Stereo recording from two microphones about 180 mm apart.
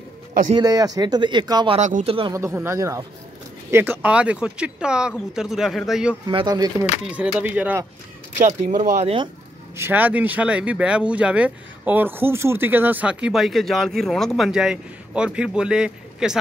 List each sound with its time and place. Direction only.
0.5 s speech: 20° right (ahead or behind)
1.8 s speech: 45° right (ahead or behind)
2.3 s speech: 15° right (ahead or behind)
6.2 s speech: 20° right (ahead or behind)
7.1 s speech: 5° right (ahead or behind)
8.4 s speech: 40° right (ahead or behind)
9.8 s speech: 10° right (ahead or behind)